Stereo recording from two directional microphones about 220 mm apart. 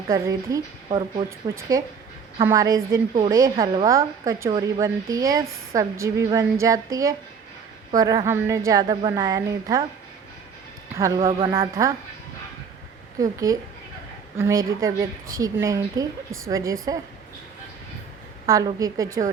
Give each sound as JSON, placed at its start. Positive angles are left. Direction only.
{"t": 0.1, "sound": "a woman's voice", "side_deg": -15}
{"t": 10.9, "sound": "a woman's voice", "side_deg": -15}
{"t": 13.1, "sound": "a woman's voice", "side_deg": -15}
{"t": 18.4, "sound": "a woman's voice", "side_deg": -15}